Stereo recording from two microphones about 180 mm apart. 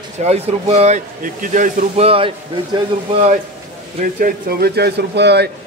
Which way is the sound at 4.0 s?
55° right (ahead or behind).